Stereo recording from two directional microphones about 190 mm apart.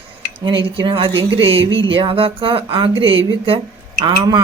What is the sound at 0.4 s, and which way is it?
Speech, 25° right (ahead or behind).